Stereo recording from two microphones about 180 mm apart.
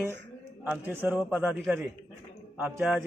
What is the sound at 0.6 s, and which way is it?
A man's voice, 10° right (ahead or behind).